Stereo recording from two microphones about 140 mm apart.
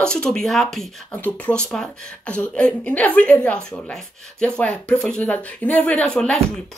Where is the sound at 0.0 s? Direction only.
5° left (ahead or behind).